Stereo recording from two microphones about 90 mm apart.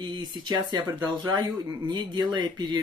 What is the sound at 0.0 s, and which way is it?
Speech, 55° right (ahead or behind).